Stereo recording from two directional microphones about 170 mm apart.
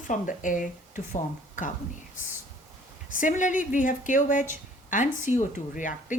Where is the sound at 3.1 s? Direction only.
50° left (ahead or behind).